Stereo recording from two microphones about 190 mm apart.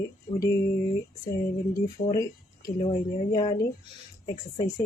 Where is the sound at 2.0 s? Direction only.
20° left (ahead or behind).